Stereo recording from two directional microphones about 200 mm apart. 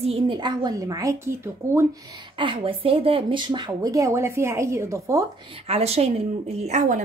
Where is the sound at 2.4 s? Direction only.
25° right (ahead or behind).